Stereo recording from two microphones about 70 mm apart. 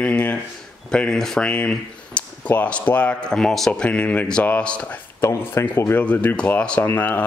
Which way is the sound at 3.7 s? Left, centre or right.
Centre.